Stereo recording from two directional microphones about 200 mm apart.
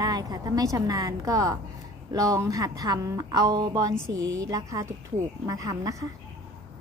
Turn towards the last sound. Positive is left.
turn(degrees=-15)  # may be behind; listen again after turning